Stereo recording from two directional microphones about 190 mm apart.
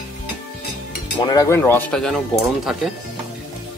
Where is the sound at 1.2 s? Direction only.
20° left (ahead or behind); by 2.9 s centre (ahead or behind).